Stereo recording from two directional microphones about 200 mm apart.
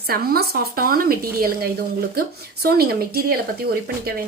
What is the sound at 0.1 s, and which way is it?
Speech, 50° right (ahead or behind).